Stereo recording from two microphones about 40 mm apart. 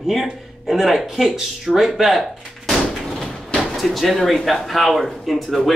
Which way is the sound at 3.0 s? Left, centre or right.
Centre.